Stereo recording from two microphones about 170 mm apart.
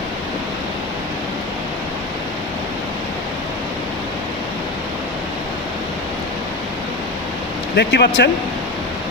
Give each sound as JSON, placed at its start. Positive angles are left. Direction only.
{"t": 7.8, "sound": "speech", "side_deg": 80}